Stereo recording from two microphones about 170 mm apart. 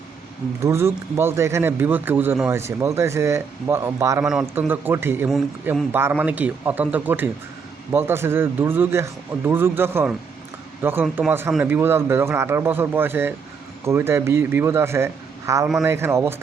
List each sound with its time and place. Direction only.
0.6 s speech: 15° right (ahead or behind)
4.2 s speech: 5° right (ahead or behind)